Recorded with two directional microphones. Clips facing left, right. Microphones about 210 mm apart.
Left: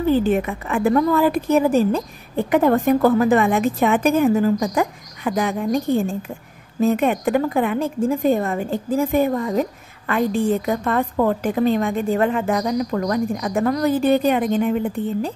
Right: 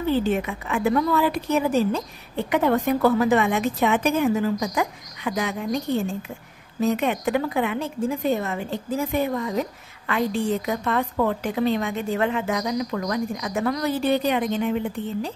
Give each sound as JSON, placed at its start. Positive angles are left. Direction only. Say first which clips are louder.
{"t": 0.2, "sound": "a woman's voice", "louder": "left 4 dB", "side_deg": 50}